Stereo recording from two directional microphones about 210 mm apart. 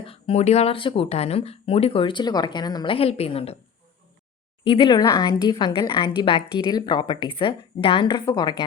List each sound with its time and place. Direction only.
0.0 s a woman's voice: 25° left (ahead or behind)
4.6 s a woman's voice: 25° left (ahead or behind)